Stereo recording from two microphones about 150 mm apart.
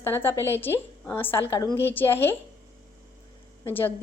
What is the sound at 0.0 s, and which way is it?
A woman's voice, 15° left (ahead or behind).